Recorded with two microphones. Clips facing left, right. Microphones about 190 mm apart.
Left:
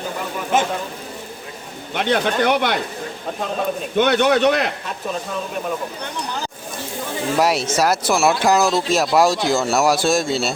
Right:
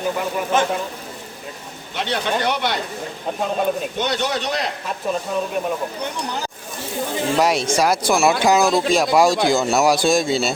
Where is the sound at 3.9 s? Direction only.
60° left (ahead or behind).